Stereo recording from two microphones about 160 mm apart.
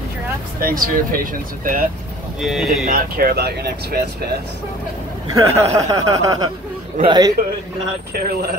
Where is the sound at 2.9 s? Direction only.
70° right (ahead or behind).